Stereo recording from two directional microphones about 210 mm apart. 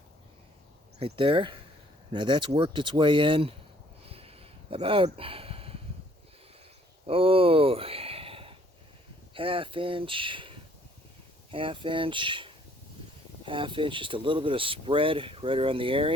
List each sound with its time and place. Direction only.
0.9 s speech: 25° right (ahead or behind)
4.1 s a sound: 25° right (ahead or behind)
7.1 s speech: 25° right (ahead or behind)